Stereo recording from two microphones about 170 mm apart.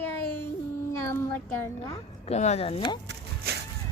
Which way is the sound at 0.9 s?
15° left (ahead or behind).